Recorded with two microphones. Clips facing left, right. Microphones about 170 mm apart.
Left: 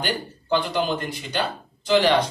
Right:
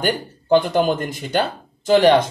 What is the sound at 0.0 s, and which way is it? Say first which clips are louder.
Speech: right 6 dB; 50° right (ahead or behind).